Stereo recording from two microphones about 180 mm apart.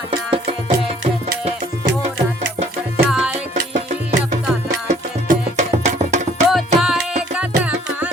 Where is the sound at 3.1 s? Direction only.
Centre (ahead or behind).